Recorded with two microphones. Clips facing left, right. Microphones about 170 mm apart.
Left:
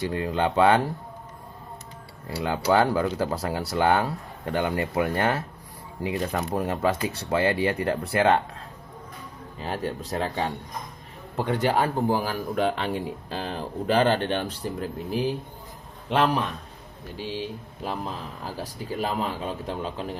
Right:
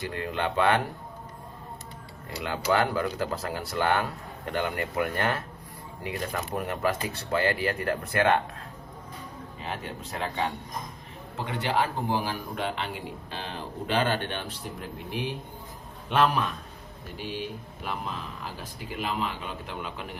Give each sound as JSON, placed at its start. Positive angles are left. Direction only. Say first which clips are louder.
{"t": 0.1, "sound": "speech", "louder": "left 5 dB", "side_deg": 30}
{"t": 2.3, "sound": "speech", "louder": "left 4 dB", "side_deg": 25}
{"t": 9.6, "sound": "a man's voice", "louder": "left 7 dB", "side_deg": 35}